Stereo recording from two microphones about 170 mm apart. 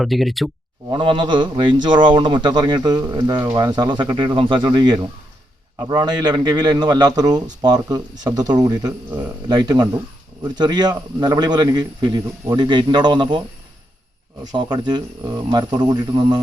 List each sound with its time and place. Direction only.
0.0 s speech: centre (ahead or behind)
0.9 s speech: 30° right (ahead or behind)
14.5 s speech: 25° right (ahead or behind)